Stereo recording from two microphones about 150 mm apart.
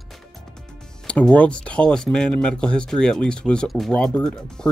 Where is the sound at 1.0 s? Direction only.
5° left (ahead or behind).